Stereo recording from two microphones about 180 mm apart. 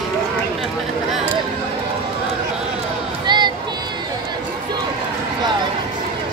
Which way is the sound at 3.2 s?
25° right (ahead or behind).